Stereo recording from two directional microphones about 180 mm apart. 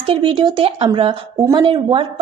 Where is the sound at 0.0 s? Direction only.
30° right (ahead or behind).